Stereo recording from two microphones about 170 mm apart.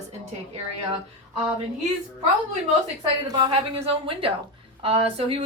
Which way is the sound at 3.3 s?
25° right (ahead or behind).